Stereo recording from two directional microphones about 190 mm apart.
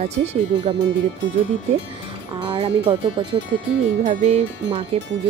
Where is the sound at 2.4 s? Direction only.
25° right (ahead or behind).